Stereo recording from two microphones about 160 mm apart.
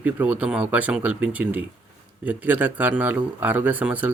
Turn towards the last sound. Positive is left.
turn(degrees=-10)  # may be behind; listen again after turning